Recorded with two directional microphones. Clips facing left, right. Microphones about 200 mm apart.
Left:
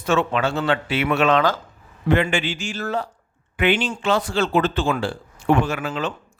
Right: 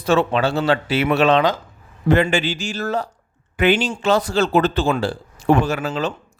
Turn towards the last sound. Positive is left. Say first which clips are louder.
# right 2 dB
turn(degrees=-40)  # may be behind; listen again after turning